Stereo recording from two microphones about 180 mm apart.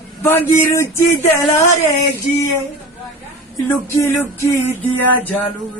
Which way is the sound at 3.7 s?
15° left (ahead or behind).